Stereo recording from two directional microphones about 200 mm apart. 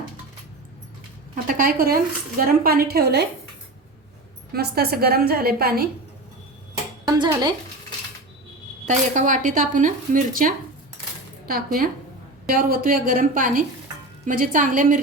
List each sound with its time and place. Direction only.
1.5 s a woman's voice: 45° right (ahead or behind)
4.5 s a woman's voice: 50° right (ahead or behind)
7.0 s speech: 20° right (ahead or behind)
8.9 s a woman's voice: 40° right (ahead or behind)